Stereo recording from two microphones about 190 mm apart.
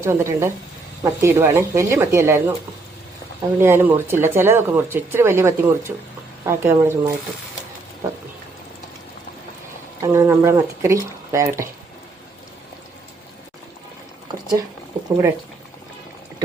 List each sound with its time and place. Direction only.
0.0 s speech: 15° right (ahead or behind)
10.0 s speech: 15° right (ahead or behind)